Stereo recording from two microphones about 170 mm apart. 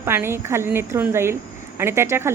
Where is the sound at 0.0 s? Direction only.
15° right (ahead or behind).